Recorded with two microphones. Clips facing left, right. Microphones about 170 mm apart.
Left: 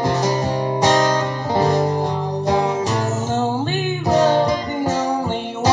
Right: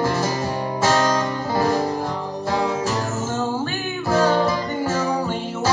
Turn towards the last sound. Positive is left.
turn(degrees=20)  # may be behind; listen again after turning